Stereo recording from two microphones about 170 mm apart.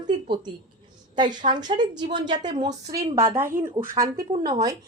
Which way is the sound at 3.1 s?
15° right (ahead or behind).